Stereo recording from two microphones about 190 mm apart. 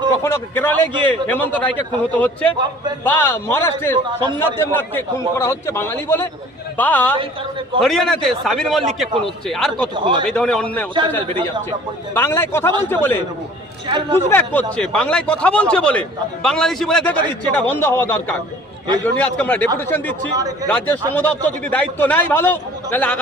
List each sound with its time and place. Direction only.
0.2 s a man's voice: 10° left (ahead or behind)
9.9 s speech: 25° right (ahead or behind)
10.2 s a man's voice: 5° left (ahead or behind)
12.1 s a man's voice: 10° left (ahead or behind)
13.8 s speech: 25° right (ahead or behind)
14.3 s a man's voice: 10° left (ahead or behind)
20.7 s a man's voice: 5° left (ahead or behind)